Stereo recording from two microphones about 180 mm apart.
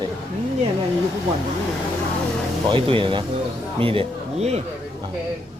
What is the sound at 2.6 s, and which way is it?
A man's voice, 30° right (ahead or behind).